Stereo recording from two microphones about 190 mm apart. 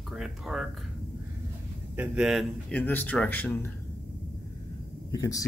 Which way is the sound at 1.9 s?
5° right (ahead or behind).